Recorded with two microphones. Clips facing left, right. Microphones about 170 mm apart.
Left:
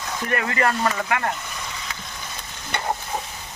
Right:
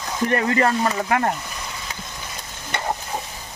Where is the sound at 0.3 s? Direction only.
30° right (ahead or behind).